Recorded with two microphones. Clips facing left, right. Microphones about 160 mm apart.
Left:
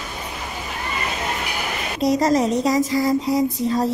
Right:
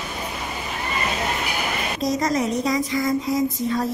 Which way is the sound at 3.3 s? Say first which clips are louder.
Left 1 dB; 30° left (ahead or behind).